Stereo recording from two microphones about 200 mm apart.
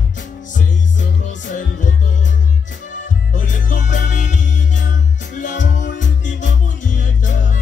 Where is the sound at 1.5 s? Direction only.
40° left (ahead or behind).